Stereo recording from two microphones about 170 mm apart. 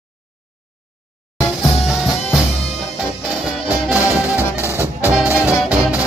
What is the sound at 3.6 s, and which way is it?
Music, 10° right (ahead or behind).